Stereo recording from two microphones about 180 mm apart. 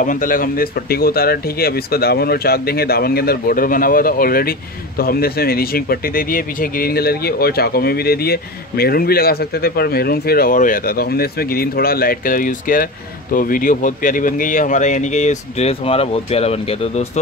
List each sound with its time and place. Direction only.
0.0 s speech: 50° left (ahead or behind)